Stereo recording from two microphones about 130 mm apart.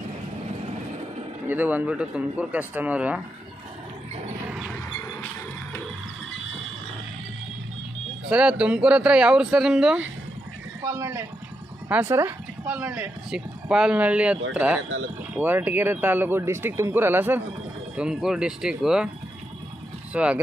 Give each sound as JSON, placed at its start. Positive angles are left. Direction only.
{"t": 1.5, "sound": "speech", "side_deg": -15}
{"t": 4.5, "sound": "a sound", "side_deg": -10}
{"t": 8.3, "sound": "speech", "side_deg": -10}
{"t": 10.8, "sound": "speech", "side_deg": -20}
{"t": 17.9, "sound": "speech", "side_deg": -5}
{"t": 20.1, "sound": "speech", "side_deg": -10}